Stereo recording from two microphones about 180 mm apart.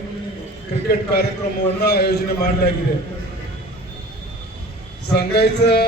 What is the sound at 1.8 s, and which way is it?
Speech, 65° left (ahead or behind).